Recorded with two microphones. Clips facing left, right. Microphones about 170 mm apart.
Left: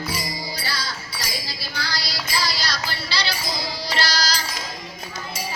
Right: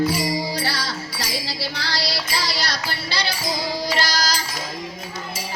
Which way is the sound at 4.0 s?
45° right (ahead or behind).